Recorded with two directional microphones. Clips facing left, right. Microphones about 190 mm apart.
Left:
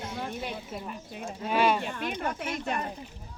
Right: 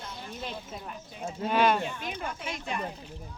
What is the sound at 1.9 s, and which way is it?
Speech, 60° left (ahead or behind).